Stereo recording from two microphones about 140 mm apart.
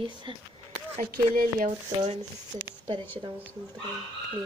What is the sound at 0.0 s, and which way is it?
Speech, 35° right (ahead or behind).